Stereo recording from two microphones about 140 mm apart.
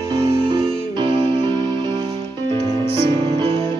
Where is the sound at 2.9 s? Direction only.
40° right (ahead or behind).